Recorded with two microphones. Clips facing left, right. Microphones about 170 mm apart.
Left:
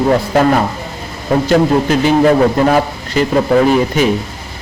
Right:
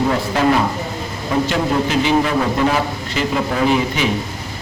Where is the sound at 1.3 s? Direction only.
45° left (ahead or behind).